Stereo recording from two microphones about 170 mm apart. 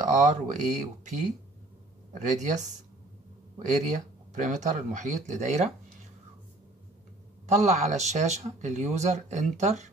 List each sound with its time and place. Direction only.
0.2 s speech: 45° right (ahead or behind)
3.5 s speech: 45° right (ahead or behind)
7.4 s speech: 45° right (ahead or behind)